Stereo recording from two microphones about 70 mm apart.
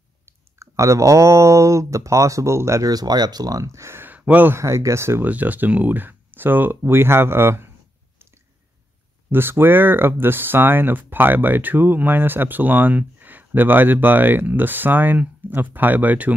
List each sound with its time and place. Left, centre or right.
0.6 s speech: right
2.9 s speech: right
4.0 s a sound: right
4.5 s speech: right
5.2 s speech: right
9.3 s speech: right